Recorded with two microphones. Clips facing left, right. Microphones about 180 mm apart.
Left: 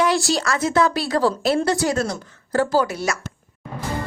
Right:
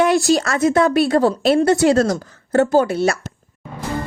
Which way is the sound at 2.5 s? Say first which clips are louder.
Right 5 dB; 25° right (ahead or behind).